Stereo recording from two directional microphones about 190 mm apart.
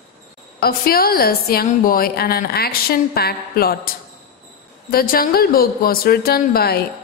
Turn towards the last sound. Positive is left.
turn(degrees=55)  # may be behind; listen again after turning